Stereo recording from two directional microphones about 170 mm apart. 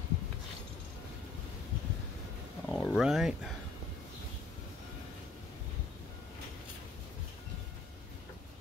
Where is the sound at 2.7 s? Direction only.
Centre (ahead or behind).